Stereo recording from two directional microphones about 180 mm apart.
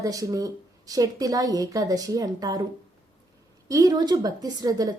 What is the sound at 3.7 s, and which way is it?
A woman's voice, 20° right (ahead or behind).